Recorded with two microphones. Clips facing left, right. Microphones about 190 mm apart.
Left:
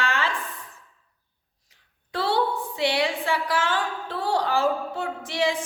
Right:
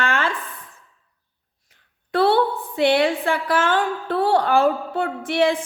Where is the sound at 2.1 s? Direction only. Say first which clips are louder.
Right 6 dB; 55° right (ahead or behind).